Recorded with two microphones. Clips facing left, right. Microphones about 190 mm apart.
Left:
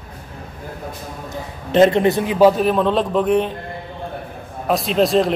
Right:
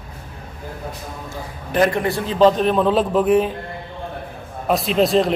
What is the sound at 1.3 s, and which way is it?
A man's voice, 25° left (ahead or behind).